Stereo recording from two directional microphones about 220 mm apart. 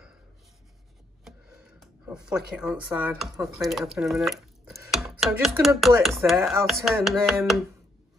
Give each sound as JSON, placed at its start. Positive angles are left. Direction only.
{"t": 1.2, "sound": "speech", "side_deg": -5}
{"t": 5.8, "sound": "chopping", "side_deg": 0}